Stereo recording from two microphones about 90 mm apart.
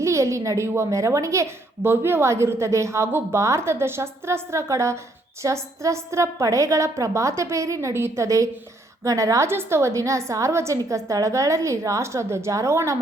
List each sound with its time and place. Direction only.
0.0 s a woman's voice: 35° right (ahead or behind)